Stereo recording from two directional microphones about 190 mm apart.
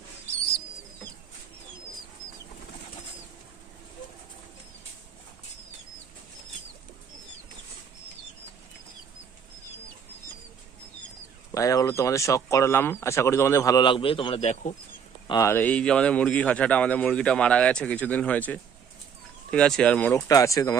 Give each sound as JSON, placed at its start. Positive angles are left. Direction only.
{"t": 11.5, "sound": "speech", "side_deg": 15}
{"t": 15.3, "sound": "speech", "side_deg": 15}
{"t": 20.2, "sound": "speech", "side_deg": 15}